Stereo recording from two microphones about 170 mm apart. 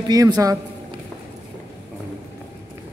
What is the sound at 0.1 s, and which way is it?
Speech, 20° right (ahead or behind).